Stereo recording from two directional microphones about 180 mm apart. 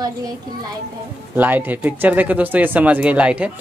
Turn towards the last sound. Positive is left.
turn(degrees=-10)  # may be behind; listen again after turning